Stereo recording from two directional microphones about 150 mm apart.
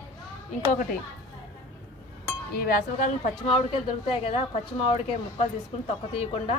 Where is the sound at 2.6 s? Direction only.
60° left (ahead or behind).